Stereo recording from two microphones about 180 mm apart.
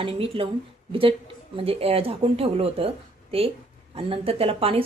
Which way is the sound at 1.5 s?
35° right (ahead or behind).